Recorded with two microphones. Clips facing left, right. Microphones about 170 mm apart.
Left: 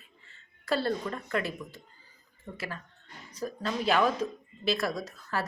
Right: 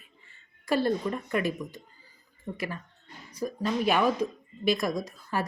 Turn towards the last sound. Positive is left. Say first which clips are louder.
# right 3 dB
turn(degrees=-15)  # may be behind; listen again after turning